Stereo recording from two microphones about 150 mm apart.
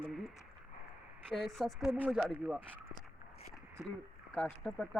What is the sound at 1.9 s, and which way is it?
Speech, 10° right (ahead or behind).